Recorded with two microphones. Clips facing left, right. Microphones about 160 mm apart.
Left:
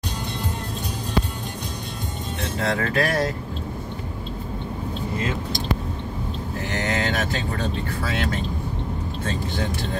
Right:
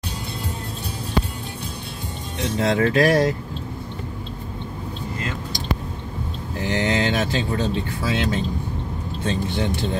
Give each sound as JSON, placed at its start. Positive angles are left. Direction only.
{"t": 2.6, "sound": "speech", "side_deg": -25}
{"t": 6.7, "sound": "speech", "side_deg": -20}